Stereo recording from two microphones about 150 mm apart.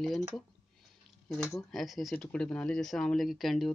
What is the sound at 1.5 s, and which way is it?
A man's voice, centre (ahead or behind).